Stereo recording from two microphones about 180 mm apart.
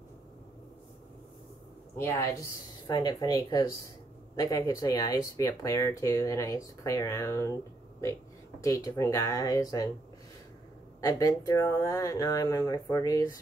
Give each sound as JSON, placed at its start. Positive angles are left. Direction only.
{"t": 2.0, "sound": "speech", "side_deg": 15}
{"t": 8.6, "sound": "speech", "side_deg": 15}
{"t": 11.0, "sound": "speech", "side_deg": 20}